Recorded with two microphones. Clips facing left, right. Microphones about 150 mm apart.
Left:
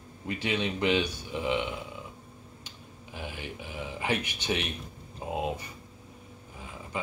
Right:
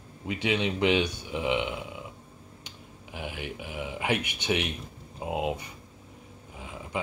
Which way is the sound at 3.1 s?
15° right (ahead or behind).